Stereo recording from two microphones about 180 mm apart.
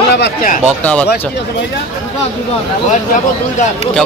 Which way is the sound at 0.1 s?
65° left (ahead or behind).